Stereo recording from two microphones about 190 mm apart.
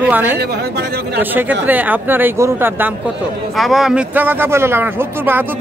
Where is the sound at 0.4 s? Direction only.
60° right (ahead or behind).